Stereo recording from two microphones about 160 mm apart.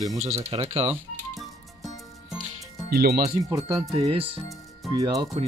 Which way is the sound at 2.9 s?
75° right (ahead or behind).